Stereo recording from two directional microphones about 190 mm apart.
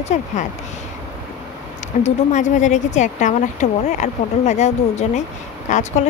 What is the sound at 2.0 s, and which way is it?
Speech, 40° left (ahead or behind).